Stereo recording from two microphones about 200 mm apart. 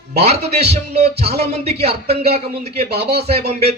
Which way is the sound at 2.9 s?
30° right (ahead or behind).